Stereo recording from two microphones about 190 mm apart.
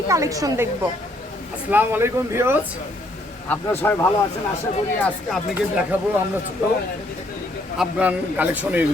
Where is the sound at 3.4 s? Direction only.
10° left (ahead or behind).